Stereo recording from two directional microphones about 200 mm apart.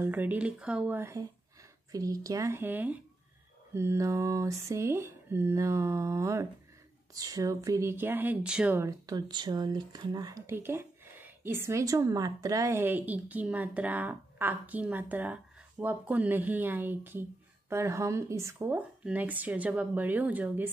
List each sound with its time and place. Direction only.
0.0 s a woman's voice: 10° right (ahead or behind)